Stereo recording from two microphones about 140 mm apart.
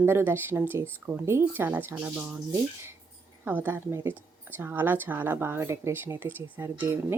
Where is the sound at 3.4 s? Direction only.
10° right (ahead or behind).